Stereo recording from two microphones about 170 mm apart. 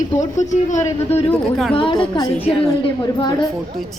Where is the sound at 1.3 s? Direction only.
Centre (ahead or behind).